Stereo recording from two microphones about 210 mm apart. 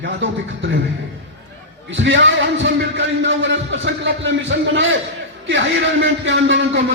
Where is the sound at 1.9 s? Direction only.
60° right (ahead or behind).